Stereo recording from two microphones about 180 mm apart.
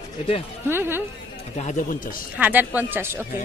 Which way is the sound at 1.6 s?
40° left (ahead or behind).